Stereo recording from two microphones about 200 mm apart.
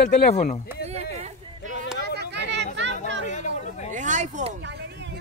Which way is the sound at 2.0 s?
55° right (ahead or behind).